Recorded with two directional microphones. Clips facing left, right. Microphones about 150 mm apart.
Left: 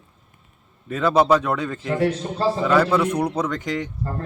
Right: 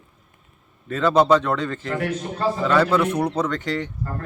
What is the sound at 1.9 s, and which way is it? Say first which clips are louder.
Speech: left 6 dB; 30° left (ahead or behind).